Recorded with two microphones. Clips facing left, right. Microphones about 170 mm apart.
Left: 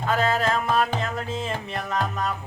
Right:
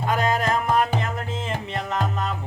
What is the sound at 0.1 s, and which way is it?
Music, 15° right (ahead or behind).